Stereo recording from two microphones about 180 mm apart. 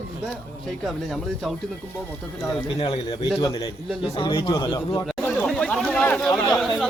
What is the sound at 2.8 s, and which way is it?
Speech, 25° left (ahead or behind).